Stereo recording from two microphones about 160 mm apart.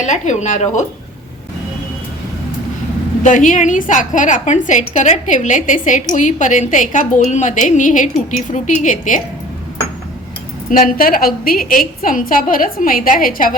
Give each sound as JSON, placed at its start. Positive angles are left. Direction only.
{"t": 0.0, "sound": "a woman's voice", "side_deg": 50}
{"t": 3.2, "sound": "a woman's voice", "side_deg": 55}
{"t": 10.7, "sound": "a woman's voice", "side_deg": 60}